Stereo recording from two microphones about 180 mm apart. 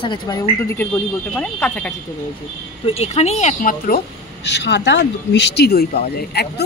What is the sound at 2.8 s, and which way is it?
Speech, 35° left (ahead or behind).